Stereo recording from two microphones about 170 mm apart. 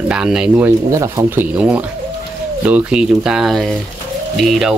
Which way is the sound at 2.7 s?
5° right (ahead or behind).